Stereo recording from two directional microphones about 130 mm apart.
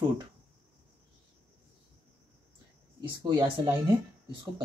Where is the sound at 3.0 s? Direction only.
35° right (ahead or behind).